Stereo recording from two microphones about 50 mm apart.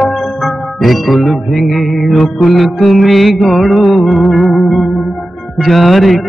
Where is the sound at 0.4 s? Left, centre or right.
Centre.